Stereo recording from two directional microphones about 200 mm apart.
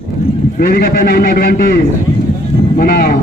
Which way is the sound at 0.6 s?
50° left (ahead or behind).